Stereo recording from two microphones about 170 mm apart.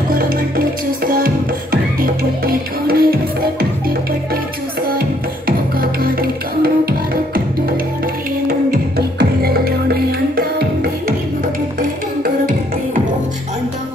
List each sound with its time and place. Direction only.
0.1 s music: 55° right (ahead or behind)
5.8 s music: 60° right (ahead or behind)
12.2 s music: 55° right (ahead or behind)